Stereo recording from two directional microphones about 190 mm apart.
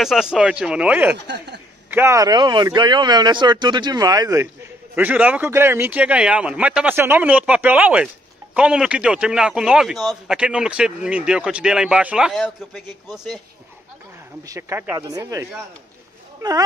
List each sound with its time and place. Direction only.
0.0 s a man's voice: centre (ahead or behind)
1.1 s speech: 65° right (ahead or behind)
1.9 s a man's voice: 15° right (ahead or behind)
14.4 s a man's voice: 15° right (ahead or behind)